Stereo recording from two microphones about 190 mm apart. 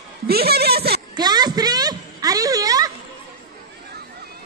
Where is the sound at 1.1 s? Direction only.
20° right (ahead or behind).